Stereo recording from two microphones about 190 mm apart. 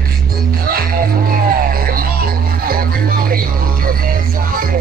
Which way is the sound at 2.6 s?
50° right (ahead or behind).